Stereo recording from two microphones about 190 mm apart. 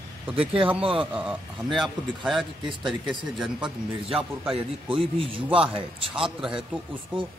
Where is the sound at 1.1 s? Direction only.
5° right (ahead or behind).